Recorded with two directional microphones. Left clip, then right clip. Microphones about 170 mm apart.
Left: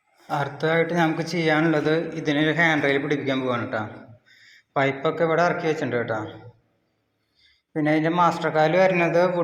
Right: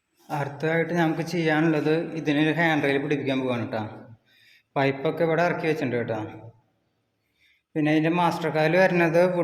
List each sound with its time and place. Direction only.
0.3 s a man's voice: 15° right (ahead or behind)
7.7 s a man's voice: 20° right (ahead or behind)